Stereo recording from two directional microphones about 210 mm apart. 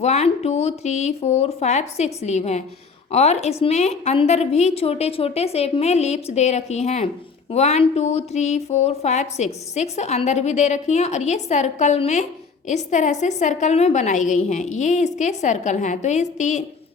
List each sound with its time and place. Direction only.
0.0 s speech: 30° left (ahead or behind)